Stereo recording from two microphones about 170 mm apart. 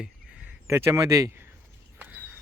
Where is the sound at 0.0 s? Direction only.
5° right (ahead or behind).